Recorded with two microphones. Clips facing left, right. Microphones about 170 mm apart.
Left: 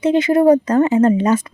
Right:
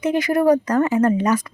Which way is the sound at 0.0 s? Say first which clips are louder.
Left 5 dB; 25° left (ahead or behind).